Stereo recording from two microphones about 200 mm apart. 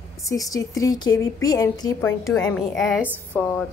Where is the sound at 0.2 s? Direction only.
15° left (ahead or behind).